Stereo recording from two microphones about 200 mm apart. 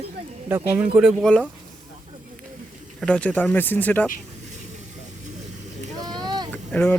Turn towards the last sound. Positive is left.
turn(degrees=10)  # may be behind; listen again after turning